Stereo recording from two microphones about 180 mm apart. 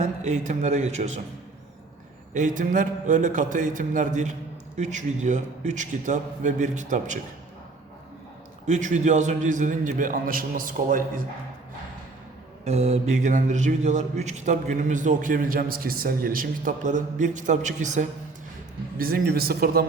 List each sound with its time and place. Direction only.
0.0 s speech: 40° right (ahead or behind)
2.3 s a man's voice: 45° right (ahead or behind)
8.6 s a man's voice: 40° right (ahead or behind)
12.6 s a man's voice: 35° right (ahead or behind)
18.9 s a man's voice: 55° right (ahead or behind)